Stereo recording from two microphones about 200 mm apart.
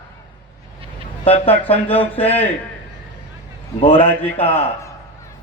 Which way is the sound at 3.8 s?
25° left (ahead or behind).